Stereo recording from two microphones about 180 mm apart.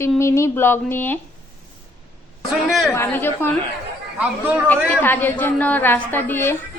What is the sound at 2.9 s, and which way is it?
Speech, 10° left (ahead or behind).